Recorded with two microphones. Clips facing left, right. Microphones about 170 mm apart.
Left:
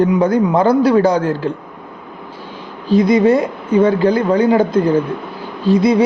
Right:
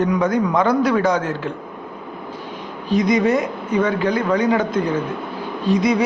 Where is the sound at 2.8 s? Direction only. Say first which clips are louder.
Left 5 dB; 30° left (ahead or behind).